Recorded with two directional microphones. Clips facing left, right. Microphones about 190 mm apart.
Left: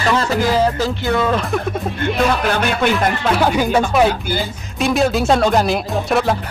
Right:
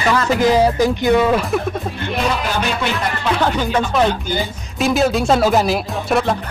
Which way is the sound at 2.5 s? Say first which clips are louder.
Left 3 dB; 55° left (ahead or behind).